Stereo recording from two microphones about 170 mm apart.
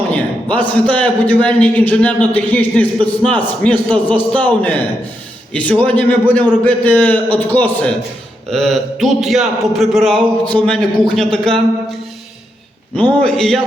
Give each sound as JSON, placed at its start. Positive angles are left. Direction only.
{"t": 0.1, "sound": "a man's voice", "side_deg": 10}
{"t": 13.0, "sound": "a man's voice", "side_deg": 5}